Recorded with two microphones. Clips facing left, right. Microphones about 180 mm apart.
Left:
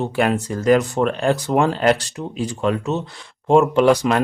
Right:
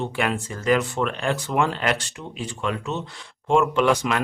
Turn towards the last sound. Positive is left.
turn(degrees=35)  # may be behind; listen again after turning